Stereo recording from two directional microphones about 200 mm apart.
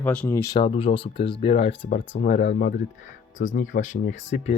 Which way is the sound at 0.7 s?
30° left (ahead or behind).